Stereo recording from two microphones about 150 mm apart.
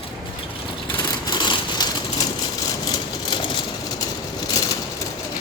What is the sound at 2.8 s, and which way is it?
Vehicle, 30° left (ahead or behind).